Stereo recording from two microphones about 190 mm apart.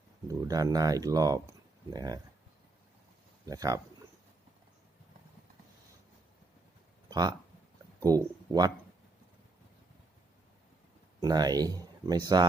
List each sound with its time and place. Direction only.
0.3 s speech: 20° right (ahead or behind)
3.4 s speech: 20° right (ahead or behind)
7.1 s speech: 20° right (ahead or behind)
11.2 s speech: 20° right (ahead or behind)